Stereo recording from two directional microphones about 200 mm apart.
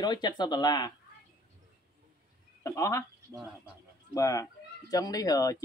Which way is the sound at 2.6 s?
15° left (ahead or behind).